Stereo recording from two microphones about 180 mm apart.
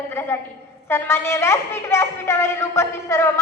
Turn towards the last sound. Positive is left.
turn(degrees=15)  # may be behind; listen again after turning